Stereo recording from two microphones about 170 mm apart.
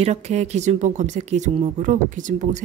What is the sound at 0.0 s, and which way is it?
Speech, 40° right (ahead or behind).